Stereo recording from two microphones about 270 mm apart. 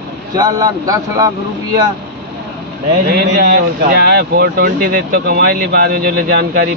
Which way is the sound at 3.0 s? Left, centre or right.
Right.